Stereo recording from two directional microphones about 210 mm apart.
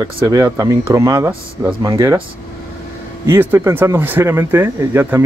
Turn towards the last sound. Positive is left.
turn(degrees=-10)  # may be behind; listen again after turning